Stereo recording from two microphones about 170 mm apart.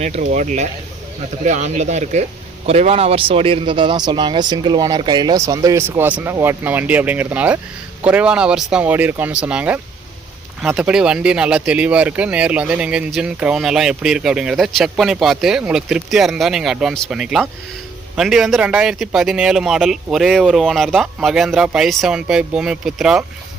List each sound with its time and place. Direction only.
0.0 s a man's voice: 45° right (ahead or behind); by 23.2 s 5° right (ahead or behind)